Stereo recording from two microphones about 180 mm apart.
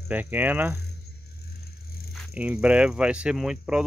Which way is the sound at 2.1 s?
5° right (ahead or behind).